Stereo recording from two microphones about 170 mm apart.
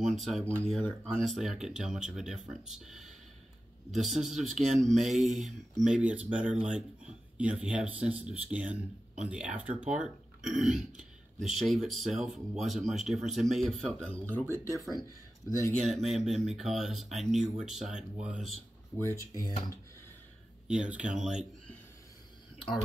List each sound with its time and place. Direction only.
0.1 s speech: centre (ahead or behind); by 15.7 s 20° left (ahead or behind)
15.9 s speech: centre (ahead or behind)
18.9 s speech: 15° left (ahead or behind)
20.6 s speech: 5° right (ahead or behind)